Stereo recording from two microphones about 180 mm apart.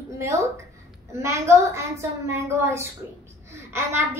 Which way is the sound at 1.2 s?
15° right (ahead or behind).